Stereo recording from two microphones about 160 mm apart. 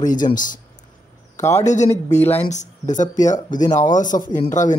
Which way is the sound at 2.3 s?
45° left (ahead or behind).